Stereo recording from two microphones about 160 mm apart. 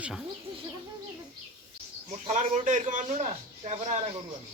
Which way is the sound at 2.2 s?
50° right (ahead or behind).